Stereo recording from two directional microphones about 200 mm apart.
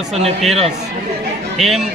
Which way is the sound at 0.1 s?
30° right (ahead or behind).